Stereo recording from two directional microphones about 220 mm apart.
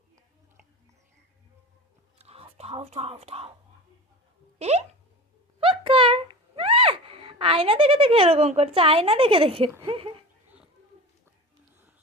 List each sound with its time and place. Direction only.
2.1 s whispering: 25° right (ahead or behind)
4.5 s speech: 30° right (ahead or behind)
5.5 s a sound: 25° right (ahead or behind)
9.8 s speech: 25° right (ahead or behind)